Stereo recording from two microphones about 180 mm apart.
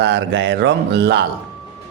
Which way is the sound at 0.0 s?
70° right (ahead or behind).